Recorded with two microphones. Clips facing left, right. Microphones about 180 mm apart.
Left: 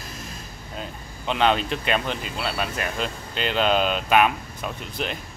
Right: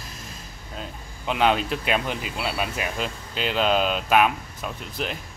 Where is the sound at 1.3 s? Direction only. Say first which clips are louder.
Even; 5° right (ahead or behind).